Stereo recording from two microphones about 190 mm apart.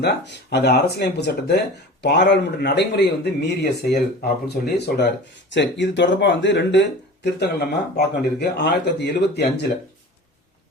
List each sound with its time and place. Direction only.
0.0 s speech: 60° left (ahead or behind)
5.5 s speech: 70° left (ahead or behind)